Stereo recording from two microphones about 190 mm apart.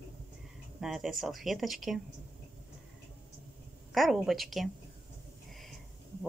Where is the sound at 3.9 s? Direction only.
Centre (ahead or behind).